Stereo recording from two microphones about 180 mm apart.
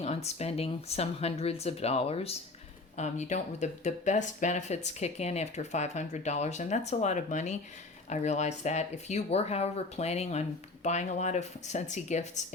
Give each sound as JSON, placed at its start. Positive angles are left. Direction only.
{"t": 0.0, "sound": "speech", "side_deg": 35}